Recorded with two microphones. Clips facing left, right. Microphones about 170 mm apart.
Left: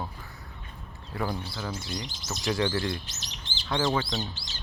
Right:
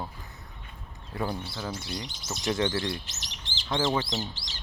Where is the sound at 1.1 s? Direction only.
20° right (ahead or behind).